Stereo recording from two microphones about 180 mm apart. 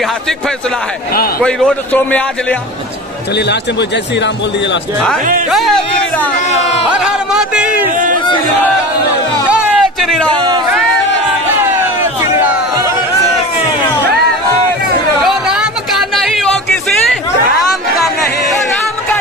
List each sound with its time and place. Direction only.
1.4 s a man's voice: 5° left (ahead or behind)
5.5 s a man's voice: centre (ahead or behind)
6.9 s music: 5° right (ahead or behind)
9.7 s a sound: centre (ahead or behind)
10.3 s speech: 25° right (ahead or behind)
12.0 s a sound: 10° right (ahead or behind)
15.2 s music: centre (ahead or behind)